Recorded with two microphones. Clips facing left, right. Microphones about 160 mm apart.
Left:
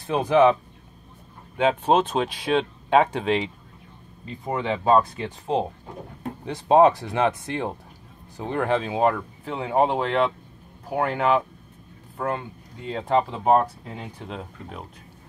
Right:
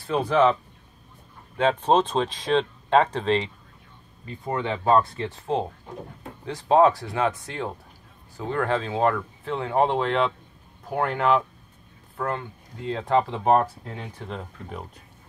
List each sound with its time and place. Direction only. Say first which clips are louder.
0.0 s speech: left 2 dB; 15° left (ahead or behind)
1.6 s speech: even; 5° left (ahead or behind)
4.5 s speech: left 1 dB; 10° left (ahead or behind)